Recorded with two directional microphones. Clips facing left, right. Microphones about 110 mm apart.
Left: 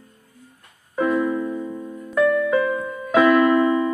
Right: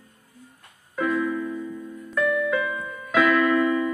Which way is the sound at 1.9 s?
40° left (ahead or behind).